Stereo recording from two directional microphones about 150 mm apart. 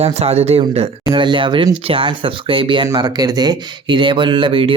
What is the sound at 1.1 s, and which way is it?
Speech, 35° right (ahead or behind).